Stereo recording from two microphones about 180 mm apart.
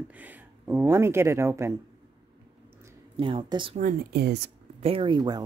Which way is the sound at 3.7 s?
55° right (ahead or behind).